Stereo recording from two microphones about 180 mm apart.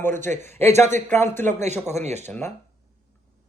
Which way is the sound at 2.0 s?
40° right (ahead or behind).